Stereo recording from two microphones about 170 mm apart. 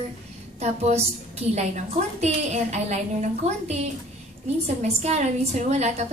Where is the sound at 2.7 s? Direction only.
40° right (ahead or behind).